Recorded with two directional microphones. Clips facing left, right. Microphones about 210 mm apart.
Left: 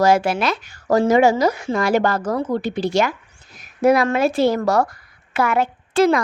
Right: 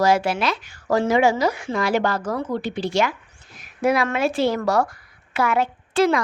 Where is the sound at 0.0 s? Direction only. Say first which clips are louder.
Left 3 dB; 45° left (ahead or behind).